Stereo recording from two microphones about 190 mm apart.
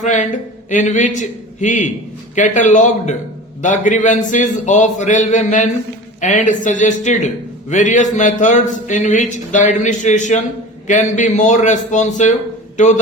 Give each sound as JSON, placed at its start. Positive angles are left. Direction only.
{"t": 0.0, "sound": "speech", "side_deg": 40}